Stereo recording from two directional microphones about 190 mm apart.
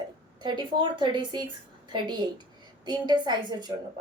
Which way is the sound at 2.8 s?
20° right (ahead or behind).